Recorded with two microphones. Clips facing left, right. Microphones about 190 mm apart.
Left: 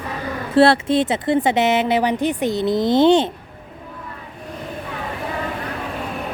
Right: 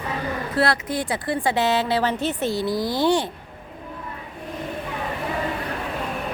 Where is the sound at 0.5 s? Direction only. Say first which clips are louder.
Left 10 dB; 30° left (ahead or behind).